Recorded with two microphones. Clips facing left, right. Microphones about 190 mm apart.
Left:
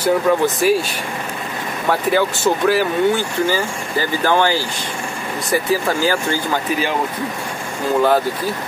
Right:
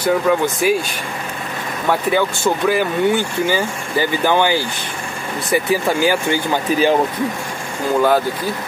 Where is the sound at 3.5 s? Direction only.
20° right (ahead or behind).